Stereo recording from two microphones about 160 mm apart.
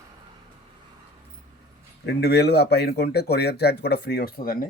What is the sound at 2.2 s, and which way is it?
Speech, 90° left.